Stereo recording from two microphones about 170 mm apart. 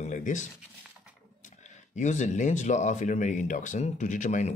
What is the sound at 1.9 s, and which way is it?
Speech, 45° left (ahead or behind).